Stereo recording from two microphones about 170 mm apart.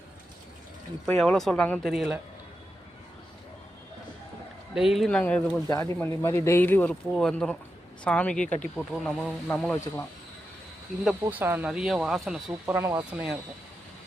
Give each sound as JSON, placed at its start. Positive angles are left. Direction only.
{"t": 1.0, "sound": "speech", "side_deg": 5}
{"t": 4.7, "sound": "speech", "side_deg": 0}
{"t": 11.1, "sound": "speech", "side_deg": -10}
{"t": 12.6, "sound": "speech", "side_deg": -15}
{"t": 13.1, "sound": "speech", "side_deg": -5}